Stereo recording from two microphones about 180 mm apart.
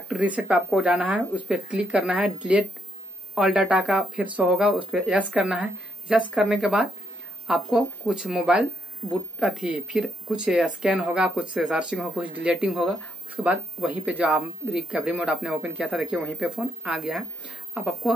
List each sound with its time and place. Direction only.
0.4 s speech: 5° right (ahead or behind)